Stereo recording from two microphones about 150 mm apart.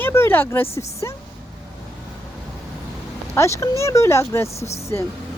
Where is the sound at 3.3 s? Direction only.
20° left (ahead or behind).